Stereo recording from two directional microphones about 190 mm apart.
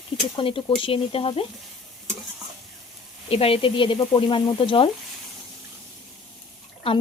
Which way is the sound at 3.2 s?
30° left (ahead or behind).